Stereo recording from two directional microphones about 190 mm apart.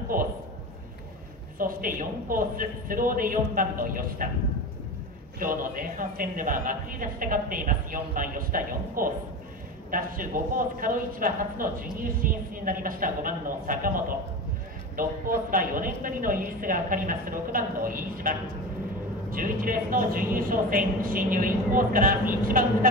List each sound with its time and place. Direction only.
0.1 s a sound: 50° right (ahead or behind)
1.6 s a man's voice: 45° right (ahead or behind)
5.4 s a man's voice: 45° right (ahead or behind)
15.5 s a man's voice: 45° right (ahead or behind)